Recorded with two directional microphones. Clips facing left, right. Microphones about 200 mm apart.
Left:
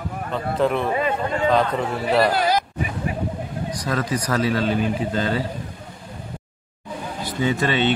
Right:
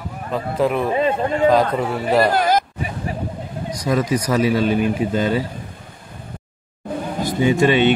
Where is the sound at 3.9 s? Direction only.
15° right (ahead or behind).